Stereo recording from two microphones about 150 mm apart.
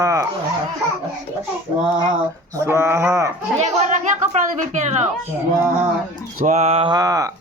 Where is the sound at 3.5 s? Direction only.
5° right (ahead or behind).